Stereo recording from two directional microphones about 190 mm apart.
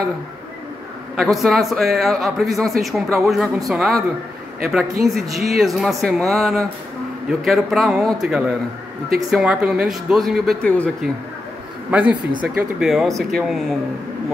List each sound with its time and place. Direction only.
1.1 s speech: centre (ahead or behind)
5.0 s speech: centre (ahead or behind)
11.9 s speech: 5° right (ahead or behind)